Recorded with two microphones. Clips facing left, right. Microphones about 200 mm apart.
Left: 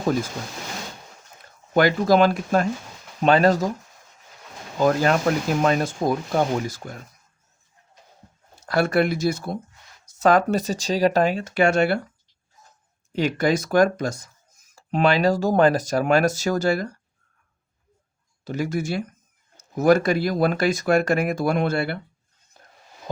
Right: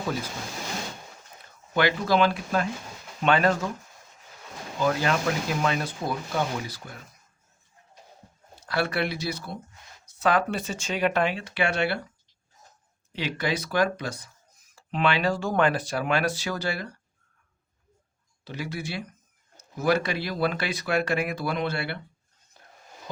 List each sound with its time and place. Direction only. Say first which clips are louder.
1.7 s speech: left 6 dB; 45° left (ahead or behind)
4.8 s speech: left 6 dB; 45° left (ahead or behind)
8.6 s speech: left 7 dB; 45° left (ahead or behind)
13.1 s speech: left 8 dB; 45° left (ahead or behind)
18.4 s speech: left 8 dB; 45° left (ahead or behind)
22.5 s a sound: left 2 dB; 45° left (ahead or behind)